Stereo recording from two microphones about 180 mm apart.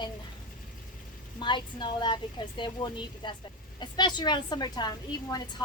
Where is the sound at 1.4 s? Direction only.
25° left (ahead or behind).